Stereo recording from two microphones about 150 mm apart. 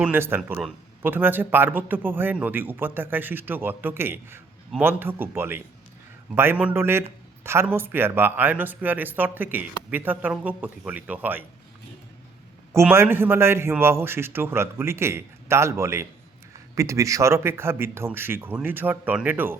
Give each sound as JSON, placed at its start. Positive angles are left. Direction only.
{"t": 0.0, "sound": "speech", "side_deg": -15}
{"t": 12.9, "sound": "speech", "side_deg": -15}